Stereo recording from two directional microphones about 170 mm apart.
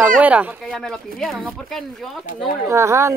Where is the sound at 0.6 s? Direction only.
5° left (ahead or behind).